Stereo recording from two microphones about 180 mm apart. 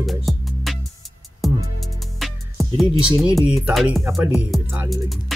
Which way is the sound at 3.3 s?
5° right (ahead or behind).